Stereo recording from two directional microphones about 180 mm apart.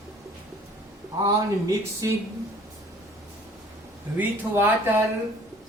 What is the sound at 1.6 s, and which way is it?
Speech, 15° right (ahead or behind).